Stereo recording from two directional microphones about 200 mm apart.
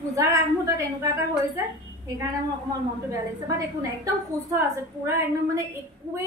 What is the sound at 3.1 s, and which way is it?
A woman's voice, 15° right (ahead or behind).